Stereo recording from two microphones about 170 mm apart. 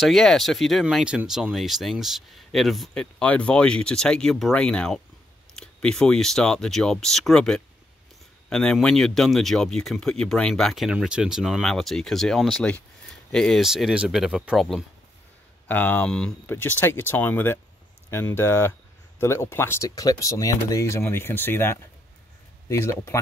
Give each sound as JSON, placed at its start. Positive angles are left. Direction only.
{"t": 0.0, "sound": "speech", "side_deg": 0}
{"t": 15.7, "sound": "speech", "side_deg": 10}